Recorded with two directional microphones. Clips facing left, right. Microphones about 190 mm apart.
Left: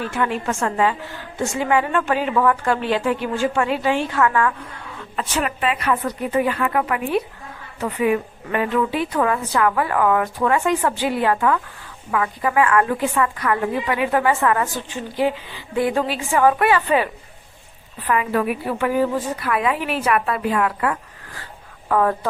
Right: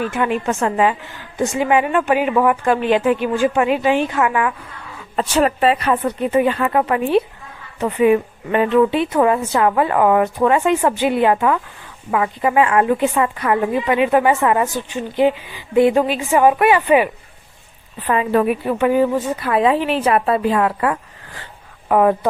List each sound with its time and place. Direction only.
0.0 s a woman's voice: 15° right (ahead or behind)
5.1 s a woman's voice: 35° right (ahead or behind); by 17.1 s 15° right (ahead or behind)
18.0 s a woman's voice: 30° right (ahead or behind)